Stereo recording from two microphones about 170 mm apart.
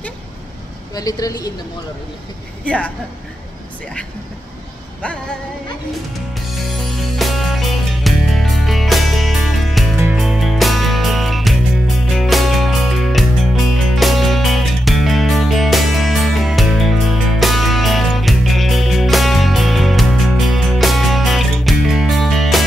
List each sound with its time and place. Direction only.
0.9 s a woman's voice: 20° left (ahead or behind)
2.6 s speech: 5° left (ahead or behind)
5.0 s music: 5° left (ahead or behind)
6.3 s music: centre (ahead or behind)